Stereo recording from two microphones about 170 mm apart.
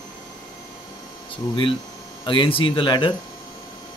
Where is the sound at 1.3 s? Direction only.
30° left (ahead or behind).